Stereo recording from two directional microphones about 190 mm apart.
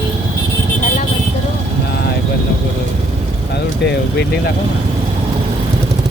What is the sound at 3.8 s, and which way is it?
Speech, 60° left (ahead or behind).